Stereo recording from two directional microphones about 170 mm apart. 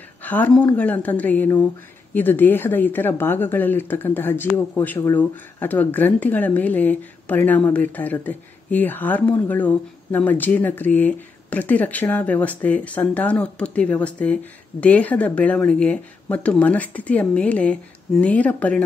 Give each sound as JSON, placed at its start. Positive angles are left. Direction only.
{"t": 0.2, "sound": "speech", "side_deg": 10}